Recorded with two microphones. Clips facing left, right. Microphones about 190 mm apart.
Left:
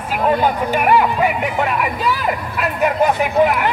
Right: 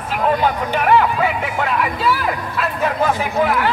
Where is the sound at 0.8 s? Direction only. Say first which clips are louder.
Even; 10° left (ahead or behind).